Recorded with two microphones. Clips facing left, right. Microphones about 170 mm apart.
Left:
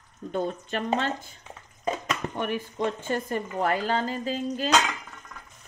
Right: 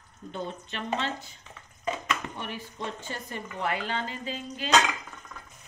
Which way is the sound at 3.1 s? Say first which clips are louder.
Left 9 dB; 45° left (ahead or behind).